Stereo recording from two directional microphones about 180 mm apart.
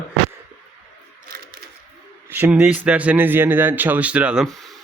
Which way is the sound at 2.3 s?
10° right (ahead or behind).